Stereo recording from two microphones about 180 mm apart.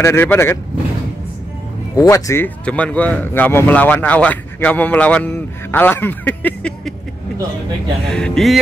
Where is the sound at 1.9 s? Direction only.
20° left (ahead or behind).